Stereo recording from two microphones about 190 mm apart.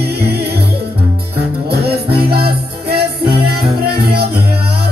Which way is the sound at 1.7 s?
55° right (ahead or behind).